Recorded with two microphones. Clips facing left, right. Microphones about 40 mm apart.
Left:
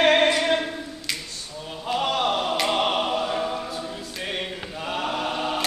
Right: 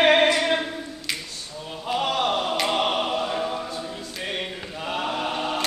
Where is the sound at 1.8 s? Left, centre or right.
Centre.